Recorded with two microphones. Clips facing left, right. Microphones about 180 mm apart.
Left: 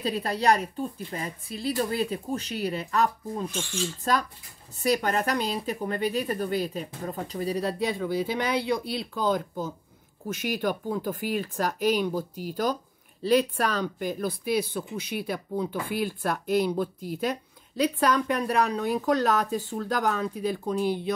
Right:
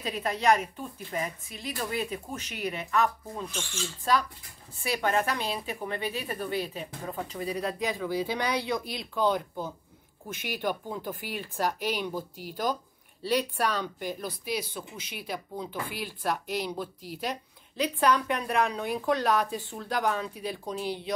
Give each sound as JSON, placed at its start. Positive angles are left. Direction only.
{"t": 0.0, "sound": "a woman's voice", "side_deg": 35}
{"t": 4.7, "sound": "a woman's voice", "side_deg": 40}